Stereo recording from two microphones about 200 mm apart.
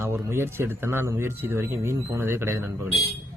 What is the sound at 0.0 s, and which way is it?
A man's voice, 10° right (ahead or behind).